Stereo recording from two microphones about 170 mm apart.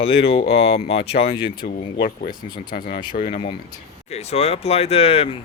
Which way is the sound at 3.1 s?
45° left (ahead or behind).